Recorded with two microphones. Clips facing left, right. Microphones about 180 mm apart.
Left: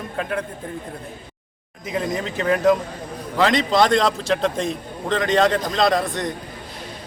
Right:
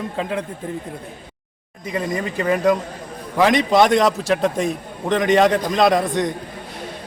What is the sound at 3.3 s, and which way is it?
A man's voice, 15° right (ahead or behind).